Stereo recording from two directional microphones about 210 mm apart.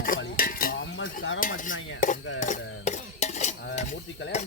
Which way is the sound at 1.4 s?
40° left (ahead or behind).